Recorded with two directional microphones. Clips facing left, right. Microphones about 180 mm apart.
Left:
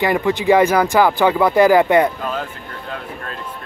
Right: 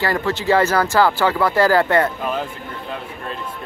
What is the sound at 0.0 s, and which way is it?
Speech, 15° left (ahead or behind).